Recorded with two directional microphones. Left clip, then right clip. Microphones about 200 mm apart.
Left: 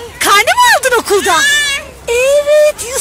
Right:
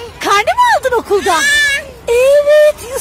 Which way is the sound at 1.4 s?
60° right (ahead or behind).